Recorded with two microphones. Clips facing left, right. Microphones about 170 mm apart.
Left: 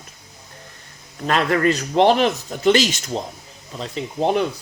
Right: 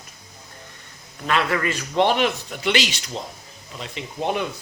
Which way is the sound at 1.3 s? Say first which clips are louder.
Left 4 dB; 40° left (ahead or behind).